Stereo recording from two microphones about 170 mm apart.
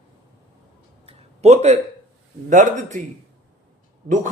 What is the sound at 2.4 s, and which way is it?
Speech, 45° right (ahead or behind).